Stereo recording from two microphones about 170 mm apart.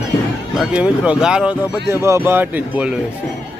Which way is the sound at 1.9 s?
15° right (ahead or behind).